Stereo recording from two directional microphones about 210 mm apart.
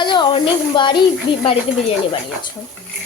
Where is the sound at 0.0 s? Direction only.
20° left (ahead or behind).